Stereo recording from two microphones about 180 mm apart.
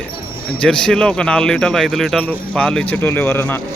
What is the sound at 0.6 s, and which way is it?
A man's voice, 5° left (ahead or behind).